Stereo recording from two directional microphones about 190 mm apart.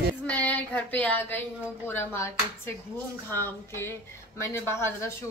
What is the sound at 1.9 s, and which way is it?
A woman's voice, 10° left (ahead or behind).